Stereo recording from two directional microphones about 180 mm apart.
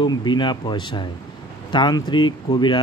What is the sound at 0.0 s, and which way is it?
Speech, 25° left (ahead or behind).